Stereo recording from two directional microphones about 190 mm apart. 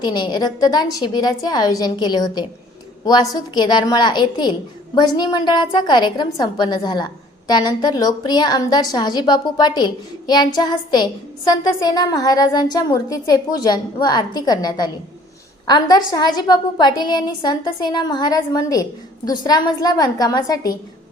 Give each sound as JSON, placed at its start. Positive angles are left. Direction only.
{"t": 0.0, "sound": "a woman's voice", "side_deg": 20}